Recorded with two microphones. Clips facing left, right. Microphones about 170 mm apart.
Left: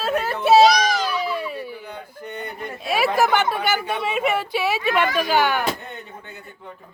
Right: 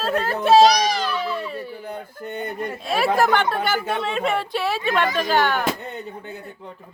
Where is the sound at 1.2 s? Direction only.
5° left (ahead or behind).